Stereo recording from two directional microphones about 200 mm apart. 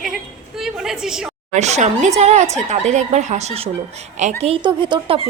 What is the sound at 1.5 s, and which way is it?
A woman's voice, 35° right (ahead or behind).